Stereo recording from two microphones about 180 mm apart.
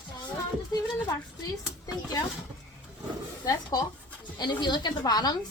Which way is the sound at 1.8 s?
20° left (ahead or behind).